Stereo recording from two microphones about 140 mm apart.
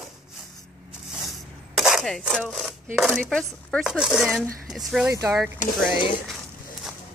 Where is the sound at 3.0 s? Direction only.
Centre (ahead or behind).